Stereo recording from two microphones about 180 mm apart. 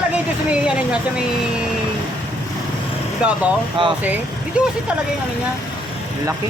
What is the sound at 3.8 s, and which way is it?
Speech, 30° right (ahead or behind).